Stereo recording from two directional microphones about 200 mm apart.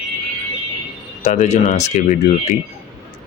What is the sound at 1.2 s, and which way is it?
Speech, 35° left (ahead or behind).